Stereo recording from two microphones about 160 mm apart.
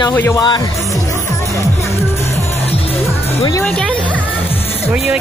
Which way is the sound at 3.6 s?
5° left (ahead or behind).